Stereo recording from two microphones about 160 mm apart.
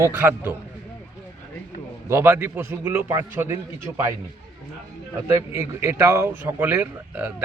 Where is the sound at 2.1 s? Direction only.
15° right (ahead or behind).